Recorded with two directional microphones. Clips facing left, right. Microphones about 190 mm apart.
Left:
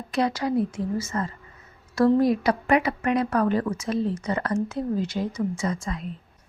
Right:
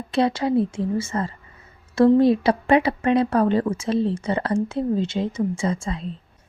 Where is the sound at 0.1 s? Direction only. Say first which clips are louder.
Right 4 dB; 25° right (ahead or behind).